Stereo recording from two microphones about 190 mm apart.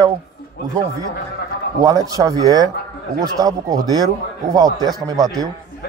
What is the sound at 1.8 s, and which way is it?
A man's voice, 20° right (ahead or behind).